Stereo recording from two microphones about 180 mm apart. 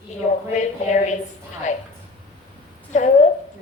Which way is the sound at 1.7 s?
40° left (ahead or behind).